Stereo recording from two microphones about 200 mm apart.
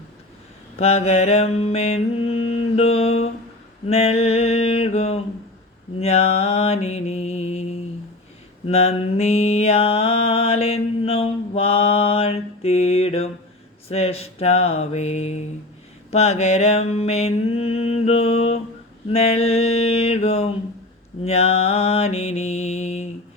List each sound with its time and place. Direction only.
0.8 s mantra: 30° left (ahead or behind)